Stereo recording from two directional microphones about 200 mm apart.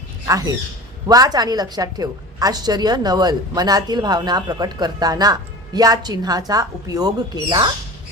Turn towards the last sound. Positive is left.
turn(degrees=-20)  # may be behind; listen again after turning